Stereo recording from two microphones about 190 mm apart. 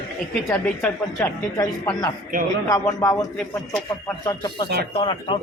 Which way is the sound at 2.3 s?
50° right (ahead or behind).